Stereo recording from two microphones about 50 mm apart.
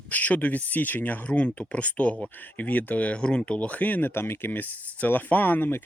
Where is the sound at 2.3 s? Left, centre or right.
Left; by 3.5 s centre.